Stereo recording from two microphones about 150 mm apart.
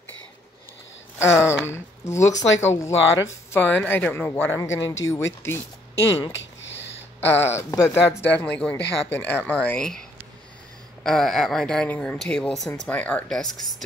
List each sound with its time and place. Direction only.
1.5 s speech: 15° left (ahead or behind)
7.2 s speech: 15° left (ahead or behind)
11.1 s speech: 5° left (ahead or behind)